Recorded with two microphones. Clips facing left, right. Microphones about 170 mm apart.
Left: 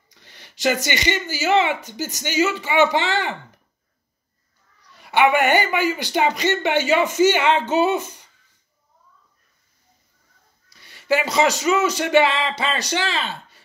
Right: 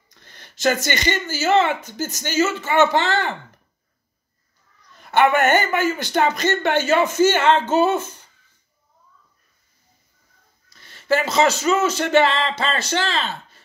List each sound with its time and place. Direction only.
0.1 s a man's voice: 15° left (ahead or behind)
4.8 s a sound: 10° left (ahead or behind)
5.6 s a man's voice: 10° left (ahead or behind)
10.7 s a man's voice: 15° left (ahead or behind)